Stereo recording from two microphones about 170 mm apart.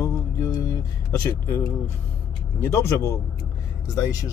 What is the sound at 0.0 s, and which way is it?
Mantra, 15° left (ahead or behind).